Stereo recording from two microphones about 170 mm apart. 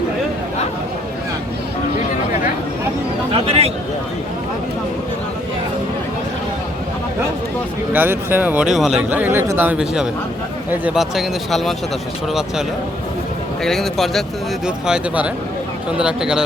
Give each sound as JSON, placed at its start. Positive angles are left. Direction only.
{"t": 3.3, "sound": "a sound", "side_deg": -35}
{"t": 7.9, "sound": "speech", "side_deg": -10}
{"t": 13.7, "sound": "speech", "side_deg": 0}